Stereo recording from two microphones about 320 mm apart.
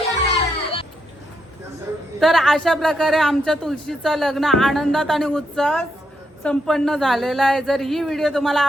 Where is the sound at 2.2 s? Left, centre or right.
Centre.